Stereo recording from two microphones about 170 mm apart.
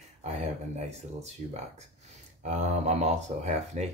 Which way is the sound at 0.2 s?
40° right (ahead or behind).